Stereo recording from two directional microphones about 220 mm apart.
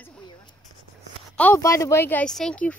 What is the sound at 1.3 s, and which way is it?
Speech, 10° left (ahead or behind).